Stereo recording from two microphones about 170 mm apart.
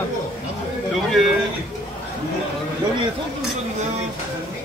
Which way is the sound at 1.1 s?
Centre (ahead or behind).